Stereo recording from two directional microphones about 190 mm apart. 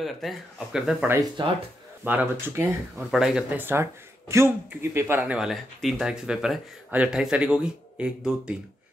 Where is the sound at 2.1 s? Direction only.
10° right (ahead or behind).